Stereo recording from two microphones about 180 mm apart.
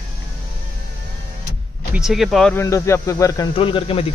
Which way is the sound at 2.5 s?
15° left (ahead or behind).